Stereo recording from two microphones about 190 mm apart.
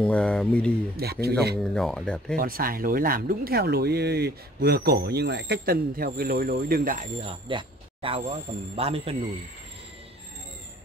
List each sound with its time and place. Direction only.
0.0 s speech: 5° left (ahead or behind)
1.0 s a man's voice: 55° right (ahead or behind)
1.6 s speech: 5° left (ahead or behind)
2.3 s speech: 50° right (ahead or behind)
7.2 s speech: 25° right (ahead or behind)